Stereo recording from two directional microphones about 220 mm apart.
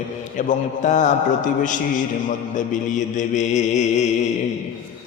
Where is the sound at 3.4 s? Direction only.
30° left (ahead or behind).